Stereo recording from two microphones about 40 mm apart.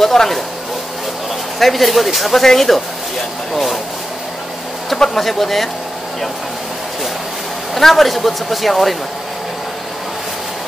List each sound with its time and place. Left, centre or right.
0.0 s speech: centre
1.6 s speech: centre
4.9 s speech: centre
7.7 s speech: centre